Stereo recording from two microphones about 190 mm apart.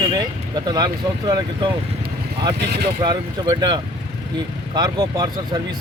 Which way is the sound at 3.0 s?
25° right (ahead or behind).